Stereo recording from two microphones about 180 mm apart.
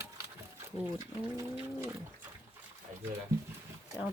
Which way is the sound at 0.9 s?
20° right (ahead or behind).